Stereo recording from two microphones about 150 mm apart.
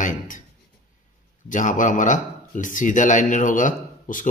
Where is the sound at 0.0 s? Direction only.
60° left (ahead or behind).